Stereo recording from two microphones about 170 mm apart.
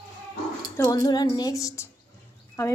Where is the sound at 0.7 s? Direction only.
20° left (ahead or behind).